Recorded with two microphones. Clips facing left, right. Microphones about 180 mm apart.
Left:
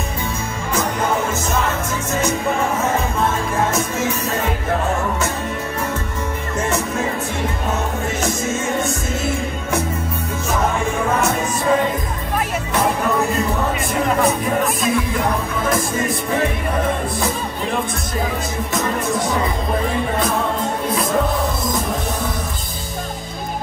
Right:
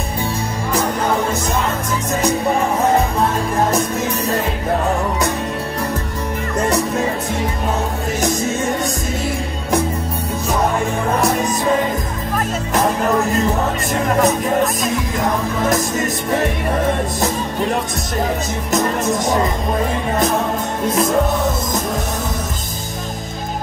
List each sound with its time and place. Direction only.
2.8 s music: 35° right (ahead or behind)
14.2 s music: 40° right (ahead or behind)
18.7 s music: 40° right (ahead or behind)